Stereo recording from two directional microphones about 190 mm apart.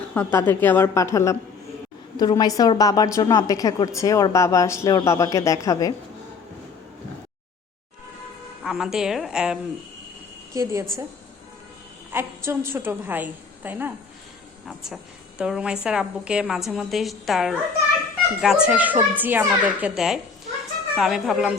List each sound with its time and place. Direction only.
0.1 s a woman's voice: 10° left (ahead or behind)
8.6 s a woman's voice: 5° right (ahead or behind)
10.5 s a woman's voice: 15° right (ahead or behind)
12.1 s a woman's voice: 15° right (ahead or behind)
15.4 s a woman's voice: 5° right (ahead or behind)